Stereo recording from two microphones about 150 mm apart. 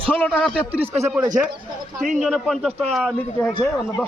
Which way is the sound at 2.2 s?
Centre (ahead or behind).